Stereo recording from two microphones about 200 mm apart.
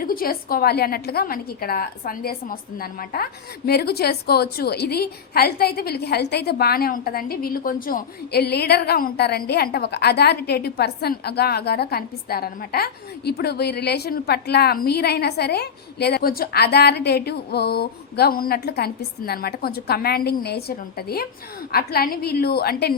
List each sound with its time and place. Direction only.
0.0 s a woman's voice: 45° left (ahead or behind)